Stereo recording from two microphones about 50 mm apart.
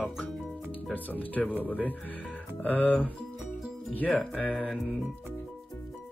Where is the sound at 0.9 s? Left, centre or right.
Left.